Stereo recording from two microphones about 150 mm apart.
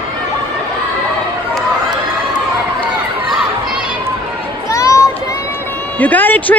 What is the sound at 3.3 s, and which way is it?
Children playing, centre (ahead or behind).